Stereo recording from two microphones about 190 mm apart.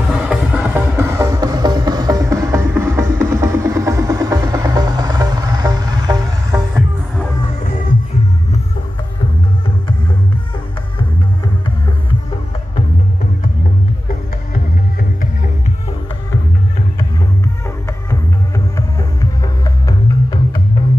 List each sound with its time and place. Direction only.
0.1 s music: 5° right (ahead or behind)
18.8 s music: 20° left (ahead or behind)